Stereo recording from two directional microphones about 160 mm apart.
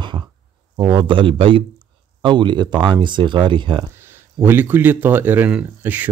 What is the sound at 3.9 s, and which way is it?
Speech, 15° right (ahead or behind).